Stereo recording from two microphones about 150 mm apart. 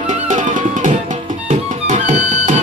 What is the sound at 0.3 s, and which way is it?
Music, 55° right (ahead or behind).